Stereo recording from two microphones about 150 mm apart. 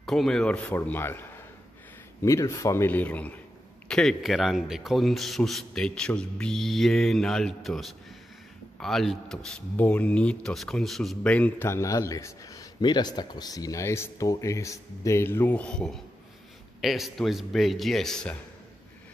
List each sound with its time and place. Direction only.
0.0 s speech: centre (ahead or behind)
2.2 s a man's voice: 20° left (ahead or behind)